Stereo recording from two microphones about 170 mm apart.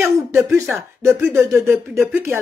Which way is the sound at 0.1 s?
15° right (ahead or behind).